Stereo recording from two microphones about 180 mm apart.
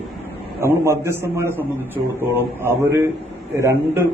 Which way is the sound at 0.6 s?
15° right (ahead or behind).